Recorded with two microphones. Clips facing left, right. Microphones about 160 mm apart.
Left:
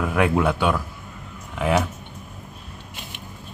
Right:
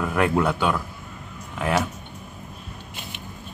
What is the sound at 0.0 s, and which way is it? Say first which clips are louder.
Speech: left 1 dB; 5° left (ahead or behind).